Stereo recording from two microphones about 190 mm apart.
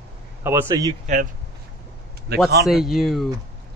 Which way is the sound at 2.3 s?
60° right (ahead or behind).